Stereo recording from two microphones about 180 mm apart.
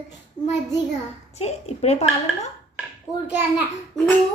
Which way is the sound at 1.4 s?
35° left (ahead or behind).